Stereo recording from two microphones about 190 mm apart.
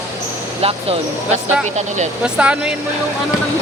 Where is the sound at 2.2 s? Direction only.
5° right (ahead or behind).